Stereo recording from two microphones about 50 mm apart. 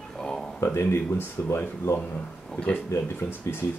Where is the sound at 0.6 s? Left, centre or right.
Left.